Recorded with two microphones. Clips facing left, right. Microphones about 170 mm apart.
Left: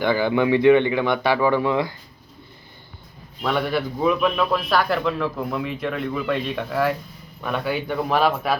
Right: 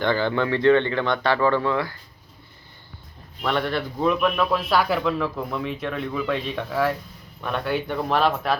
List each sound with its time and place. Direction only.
0.0 s a man's voice: 10° left (ahead or behind)
3.4 s a man's voice: 5° left (ahead or behind)